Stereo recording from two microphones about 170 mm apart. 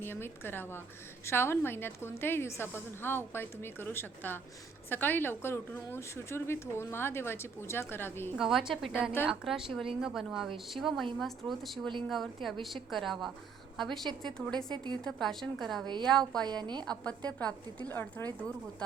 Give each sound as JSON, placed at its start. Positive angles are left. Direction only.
{"t": 0.0, "sound": "a woman's voice", "side_deg": 15}
{"t": 8.4, "sound": "a woman's voice", "side_deg": 0}
{"t": 16.4, "sound": "a woman's voice", "side_deg": -25}
{"t": 16.8, "sound": "a woman's voice", "side_deg": 5}